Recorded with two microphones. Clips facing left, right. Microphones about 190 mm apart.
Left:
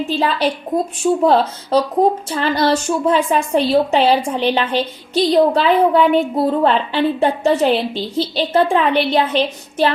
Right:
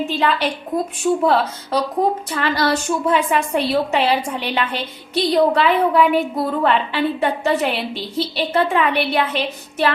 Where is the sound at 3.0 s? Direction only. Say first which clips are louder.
Left 2 dB; 30° left (ahead or behind).